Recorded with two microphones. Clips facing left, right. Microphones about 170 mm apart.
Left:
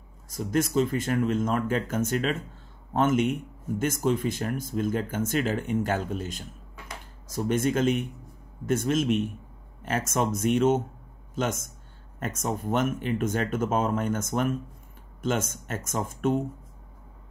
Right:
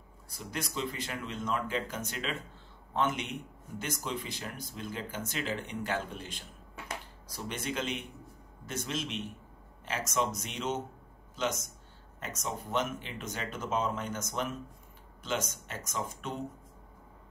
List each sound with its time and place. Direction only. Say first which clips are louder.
0.3 s speech: left 13 dB; 45° left (ahead or behind)